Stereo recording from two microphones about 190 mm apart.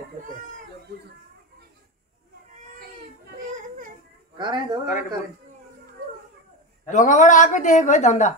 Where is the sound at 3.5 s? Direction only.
45° right (ahead or behind).